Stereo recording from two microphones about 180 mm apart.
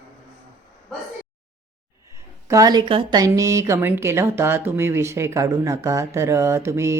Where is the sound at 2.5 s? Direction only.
20° right (ahead or behind).